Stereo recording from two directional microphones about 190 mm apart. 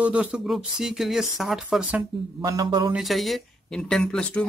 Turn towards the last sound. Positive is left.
turn(degrees=5)  # may be behind; listen again after turning